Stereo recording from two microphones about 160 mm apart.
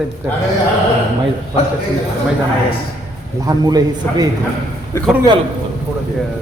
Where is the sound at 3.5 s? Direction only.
25° right (ahead or behind).